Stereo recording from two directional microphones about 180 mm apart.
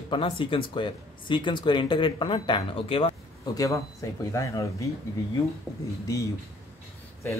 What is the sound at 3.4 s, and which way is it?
Speech, 20° left (ahead or behind).